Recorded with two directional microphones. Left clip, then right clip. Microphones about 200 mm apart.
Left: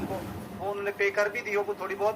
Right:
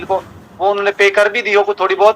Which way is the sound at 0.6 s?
45° right (ahead or behind).